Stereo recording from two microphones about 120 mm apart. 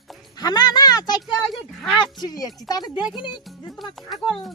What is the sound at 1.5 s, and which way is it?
Speech, centre (ahead or behind).